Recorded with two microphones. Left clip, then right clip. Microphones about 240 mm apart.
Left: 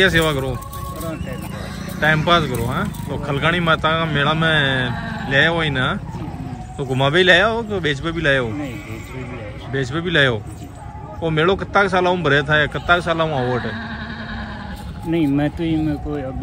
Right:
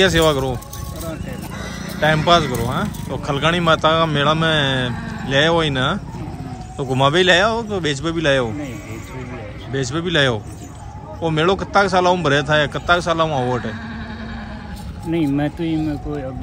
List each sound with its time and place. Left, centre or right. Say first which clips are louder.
0.0 s speech: right 1 dB; centre
2.0 s speech: right 1 dB; centre
4.9 s vehicle: left 2 dB; centre
5.3 s speech: right 1 dB; centre
9.7 s speech: even; centre
15.0 s speech: left 1 dB; centre